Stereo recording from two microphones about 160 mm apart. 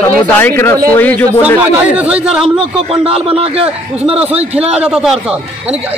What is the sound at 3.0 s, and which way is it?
A man's voice, 35° right (ahead or behind).